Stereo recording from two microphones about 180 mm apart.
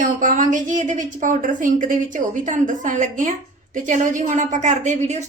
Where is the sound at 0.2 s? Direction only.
45° right (ahead or behind).